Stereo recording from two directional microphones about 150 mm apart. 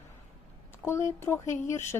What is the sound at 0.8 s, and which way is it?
A woman's voice, 20° left (ahead or behind).